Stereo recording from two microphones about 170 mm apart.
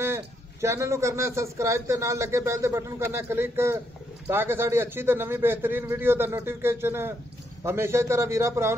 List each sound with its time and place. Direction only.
0.0 s a man's voice: 15° right (ahead or behind)